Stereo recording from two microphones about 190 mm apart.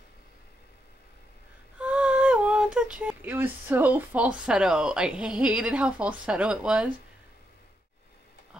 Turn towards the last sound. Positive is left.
turn(degrees=-5)  # may be behind; listen again after turning